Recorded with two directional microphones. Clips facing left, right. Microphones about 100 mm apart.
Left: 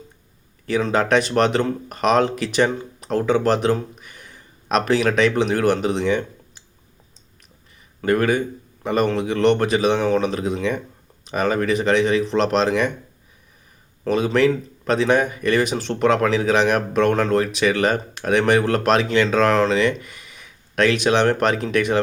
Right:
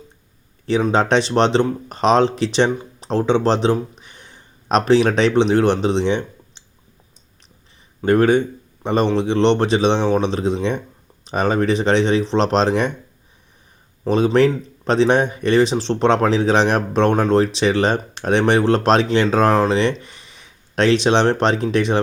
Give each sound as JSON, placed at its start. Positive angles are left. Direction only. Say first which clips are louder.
{"t": 0.8, "sound": "speech", "louder": "right 1 dB", "side_deg": -25}
{"t": 8.0, "sound": "speech", "louder": "right 4 dB", "side_deg": -30}
{"t": 14.1, "sound": "speech", "louder": "right 3 dB", "side_deg": -30}